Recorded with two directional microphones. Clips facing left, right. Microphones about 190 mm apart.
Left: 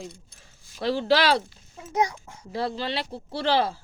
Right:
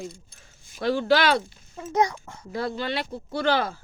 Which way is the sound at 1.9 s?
10° left (ahead or behind).